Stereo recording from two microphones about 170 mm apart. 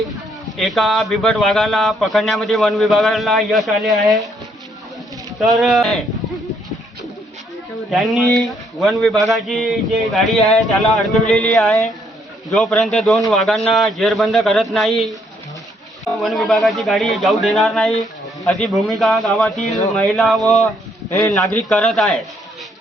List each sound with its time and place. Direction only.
0.5 s speech: centre (ahead or behind)
5.4 s speech: centre (ahead or behind)
7.9 s speech: centre (ahead or behind)
12.5 s speech: centre (ahead or behind)
21.7 s speech: centre (ahead or behind)